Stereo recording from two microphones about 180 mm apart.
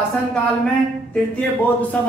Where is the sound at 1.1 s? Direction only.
5° left (ahead or behind).